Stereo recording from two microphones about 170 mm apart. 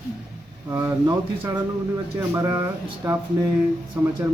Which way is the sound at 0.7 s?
15° right (ahead or behind).